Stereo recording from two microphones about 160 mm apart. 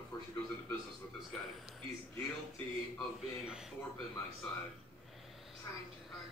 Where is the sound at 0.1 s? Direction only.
25° left (ahead or behind).